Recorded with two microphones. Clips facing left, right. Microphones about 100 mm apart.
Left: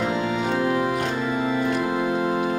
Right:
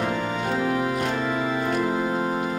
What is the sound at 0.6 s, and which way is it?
Music, 15° left (ahead or behind).